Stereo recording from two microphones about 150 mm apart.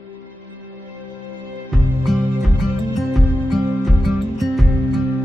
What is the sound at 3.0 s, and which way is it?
Music, centre (ahead or behind).